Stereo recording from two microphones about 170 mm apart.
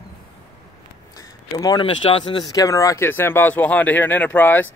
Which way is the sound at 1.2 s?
20° left (ahead or behind).